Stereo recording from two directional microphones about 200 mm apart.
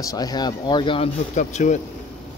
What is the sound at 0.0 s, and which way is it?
Speech, 20° left (ahead or behind).